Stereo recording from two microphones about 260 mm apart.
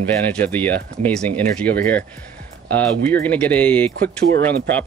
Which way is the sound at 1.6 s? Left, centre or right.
Right.